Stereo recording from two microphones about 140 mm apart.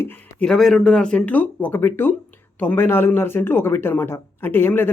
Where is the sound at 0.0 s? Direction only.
10° left (ahead or behind).